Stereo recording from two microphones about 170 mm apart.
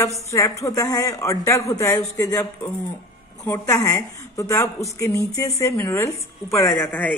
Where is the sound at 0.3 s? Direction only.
20° left (ahead or behind).